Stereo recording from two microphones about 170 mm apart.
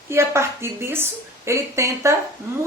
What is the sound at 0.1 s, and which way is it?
Speech, 15° right (ahead or behind).